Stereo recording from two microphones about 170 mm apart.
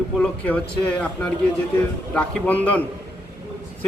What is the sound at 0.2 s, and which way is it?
A man's voice, 10° left (ahead or behind).